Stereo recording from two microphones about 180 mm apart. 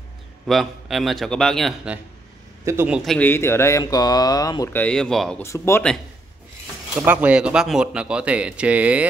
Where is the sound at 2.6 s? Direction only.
15° right (ahead or behind).